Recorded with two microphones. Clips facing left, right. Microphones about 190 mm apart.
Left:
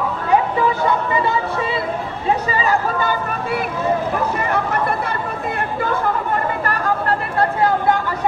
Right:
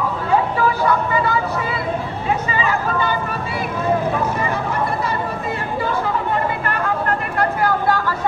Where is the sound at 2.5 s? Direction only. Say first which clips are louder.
Left 1 dB; 40° left (ahead or behind).